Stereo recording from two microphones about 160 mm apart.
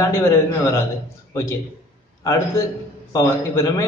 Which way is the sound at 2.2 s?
20° left (ahead or behind).